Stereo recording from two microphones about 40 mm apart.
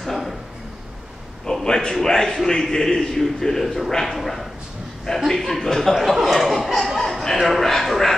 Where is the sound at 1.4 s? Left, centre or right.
Centre.